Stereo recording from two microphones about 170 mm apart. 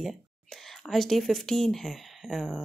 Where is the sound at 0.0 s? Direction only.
Centre (ahead or behind).